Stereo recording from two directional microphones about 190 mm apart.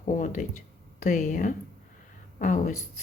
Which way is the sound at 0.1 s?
40° left (ahead or behind).